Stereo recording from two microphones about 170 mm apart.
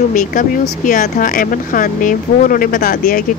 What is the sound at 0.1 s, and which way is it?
Speech, 50° left (ahead or behind).